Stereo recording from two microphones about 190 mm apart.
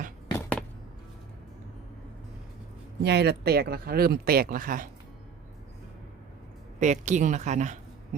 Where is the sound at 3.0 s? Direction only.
60° right (ahead or behind).